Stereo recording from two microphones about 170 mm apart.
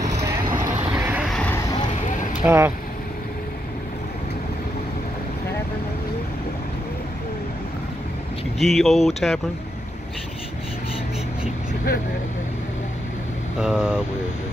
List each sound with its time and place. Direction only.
0.0 s vehicle: 20° right (ahead or behind)
1.3 s a sound: 5° left (ahead or behind)
2.0 s vehicle: 45° left (ahead or behind)
2.4 s speech: 15° right (ahead or behind)
8.5 s speech: centre (ahead or behind)
13.6 s speech: 5° right (ahead or behind)